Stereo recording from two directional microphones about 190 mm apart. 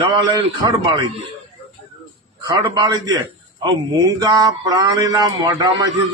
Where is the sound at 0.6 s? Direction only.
25° right (ahead or behind).